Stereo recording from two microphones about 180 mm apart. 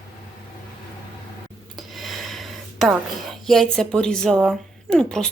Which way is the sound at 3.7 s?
5° left (ahead or behind).